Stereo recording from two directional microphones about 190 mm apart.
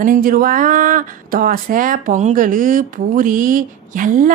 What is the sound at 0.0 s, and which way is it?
Speech, 45° right (ahead or behind).